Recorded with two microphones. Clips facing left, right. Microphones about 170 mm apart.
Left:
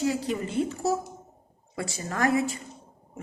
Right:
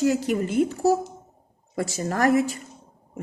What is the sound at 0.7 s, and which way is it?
Speech, 40° right (ahead or behind).